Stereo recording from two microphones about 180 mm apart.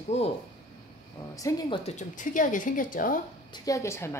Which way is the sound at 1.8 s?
40° left (ahead or behind).